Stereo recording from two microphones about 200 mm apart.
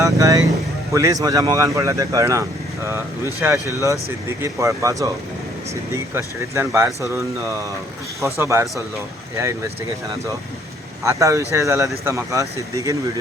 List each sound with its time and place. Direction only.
0.0 s vehicle: 15° right (ahead or behind)
0.9 s speech: 15° right (ahead or behind)
11.0 s speech: 15° right (ahead or behind)